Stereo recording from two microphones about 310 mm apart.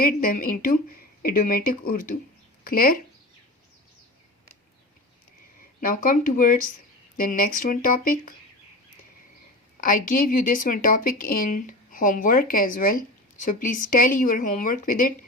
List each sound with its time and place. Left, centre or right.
0.0 s speech: left
5.8 s speech: left
9.8 s speech: left